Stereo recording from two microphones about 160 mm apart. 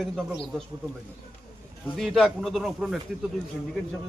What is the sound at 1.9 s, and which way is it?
Speech, centre (ahead or behind).